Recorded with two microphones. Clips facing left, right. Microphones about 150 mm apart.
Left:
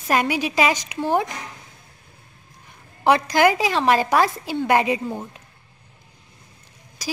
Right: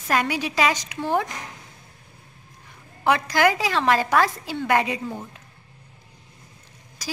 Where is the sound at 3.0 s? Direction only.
20° left (ahead or behind).